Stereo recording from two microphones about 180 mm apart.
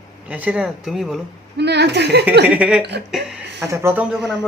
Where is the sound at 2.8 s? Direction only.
70° right (ahead or behind).